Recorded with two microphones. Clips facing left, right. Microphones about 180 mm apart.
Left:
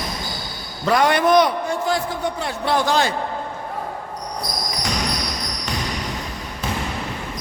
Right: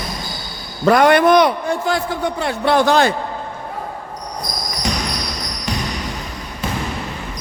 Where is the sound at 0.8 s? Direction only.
55° right (ahead or behind).